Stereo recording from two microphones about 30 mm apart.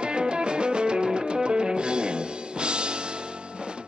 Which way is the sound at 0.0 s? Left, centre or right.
Right.